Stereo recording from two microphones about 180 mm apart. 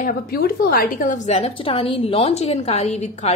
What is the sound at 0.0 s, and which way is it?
A woman's voice, 55° left (ahead or behind).